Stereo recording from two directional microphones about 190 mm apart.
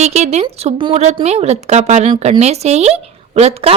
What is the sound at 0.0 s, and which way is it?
A woman's voice, 35° right (ahead or behind).